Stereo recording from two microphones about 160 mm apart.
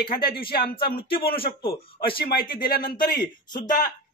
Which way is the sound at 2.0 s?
70° left (ahead or behind).